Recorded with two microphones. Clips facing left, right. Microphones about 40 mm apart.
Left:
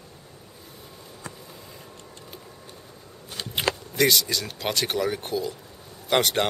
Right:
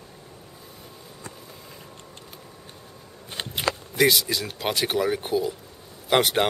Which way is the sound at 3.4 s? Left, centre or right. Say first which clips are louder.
Right 2 dB; right.